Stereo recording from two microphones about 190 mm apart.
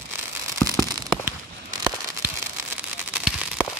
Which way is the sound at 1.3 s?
15° right (ahead or behind).